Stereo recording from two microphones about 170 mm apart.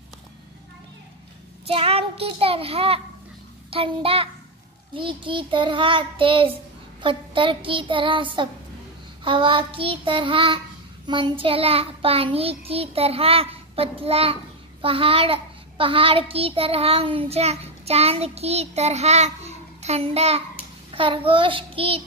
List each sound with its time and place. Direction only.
1.7 s child singing: 35° right (ahead or behind)